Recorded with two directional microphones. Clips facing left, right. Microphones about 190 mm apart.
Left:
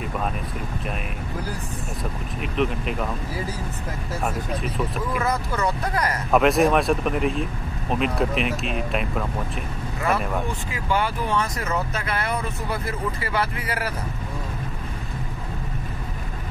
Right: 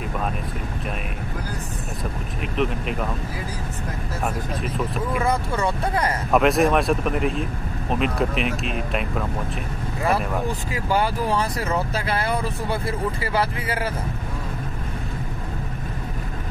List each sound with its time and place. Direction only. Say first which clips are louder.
2.5 s speech: even; centre (ahead or behind)
4.2 s speech: even; centre (ahead or behind)
5.2 s speech: right 2 dB; 30° right (ahead or behind)
6.3 s speech: even; centre (ahead or behind)
10.7 s speech: right 2 dB; 35° right (ahead or behind)